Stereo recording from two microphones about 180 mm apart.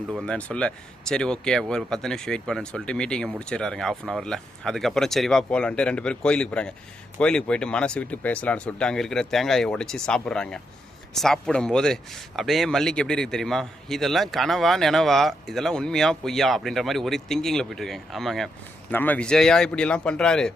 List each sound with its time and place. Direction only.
0.1 s speech: 5° left (ahead or behind)